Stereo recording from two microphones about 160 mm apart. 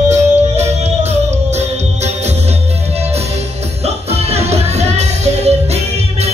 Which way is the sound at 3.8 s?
40° right (ahead or behind).